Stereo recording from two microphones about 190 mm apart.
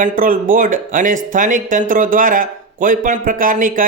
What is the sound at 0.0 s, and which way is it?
A man's voice, 45° right (ahead or behind).